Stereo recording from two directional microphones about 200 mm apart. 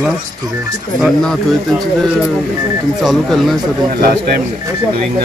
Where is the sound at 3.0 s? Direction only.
Centre (ahead or behind).